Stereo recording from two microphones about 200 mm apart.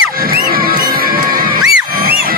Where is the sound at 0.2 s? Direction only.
45° right (ahead or behind).